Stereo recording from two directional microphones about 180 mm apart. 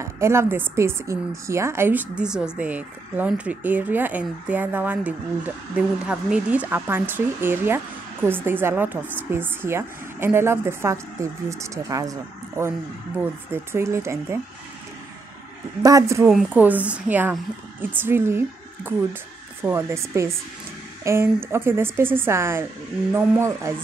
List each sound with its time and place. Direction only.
0.0 s speech: 15° right (ahead or behind)
15.8 s speech: 20° right (ahead or behind)
19.6 s speech: 15° right (ahead or behind)